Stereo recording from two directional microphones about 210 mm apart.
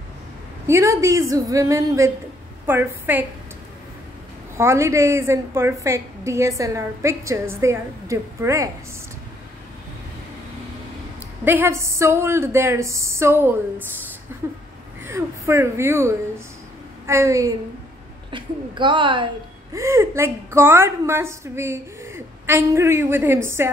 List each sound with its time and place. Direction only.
0.7 s a woman's voice: 15° right (ahead or behind)
4.6 s a woman's voice: 15° right (ahead or behind)
11.4 s a woman's voice: 10° right (ahead or behind)